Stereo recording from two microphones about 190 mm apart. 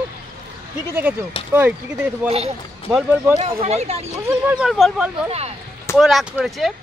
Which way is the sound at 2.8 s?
Centre (ahead or behind).